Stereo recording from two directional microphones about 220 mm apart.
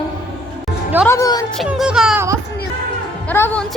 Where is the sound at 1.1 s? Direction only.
15° left (ahead or behind).